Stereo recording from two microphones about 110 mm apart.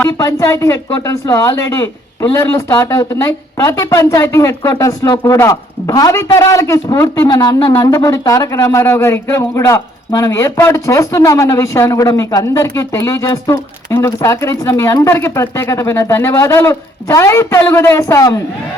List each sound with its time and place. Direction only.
0.2 s a man's voice: 30° left (ahead or behind)